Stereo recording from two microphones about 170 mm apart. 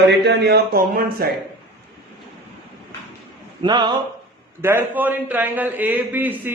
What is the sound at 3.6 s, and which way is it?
Speech, 25° right (ahead or behind).